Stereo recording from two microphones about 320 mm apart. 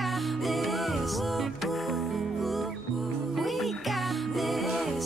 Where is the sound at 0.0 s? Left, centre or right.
Centre.